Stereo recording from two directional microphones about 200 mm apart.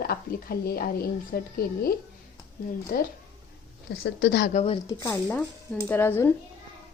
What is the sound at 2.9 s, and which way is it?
Speech, 50° left (ahead or behind).